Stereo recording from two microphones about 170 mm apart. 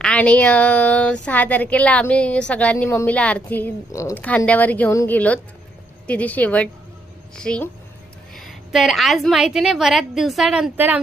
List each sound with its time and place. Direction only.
0.0 s a woman's voice: 5° left (ahead or behind); by 11.0 s 10° right (ahead or behind)